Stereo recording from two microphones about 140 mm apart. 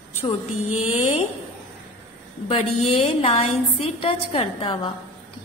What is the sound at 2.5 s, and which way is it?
A woman's voice, 45° left (ahead or behind).